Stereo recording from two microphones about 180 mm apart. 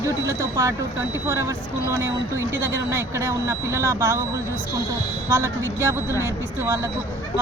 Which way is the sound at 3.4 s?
15° right (ahead or behind).